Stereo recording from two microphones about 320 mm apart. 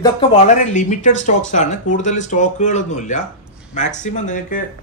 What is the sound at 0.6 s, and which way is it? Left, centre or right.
Speech, left.